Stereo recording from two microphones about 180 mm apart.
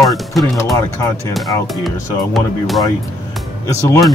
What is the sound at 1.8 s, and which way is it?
Speech, centre (ahead or behind).